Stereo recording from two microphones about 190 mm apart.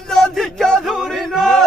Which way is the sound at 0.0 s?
Centre (ahead or behind).